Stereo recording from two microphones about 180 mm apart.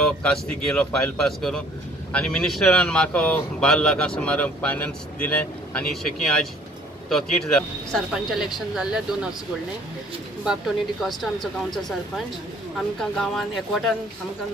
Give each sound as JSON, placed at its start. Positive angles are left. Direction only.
{"t": 0.0, "sound": "speech", "side_deg": 5}
{"t": 10.4, "sound": "speech", "side_deg": 0}
{"t": 12.7, "sound": "speech", "side_deg": 5}